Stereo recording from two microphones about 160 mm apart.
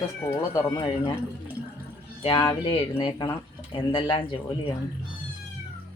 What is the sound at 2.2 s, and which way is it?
Speech, 30° left (ahead or behind).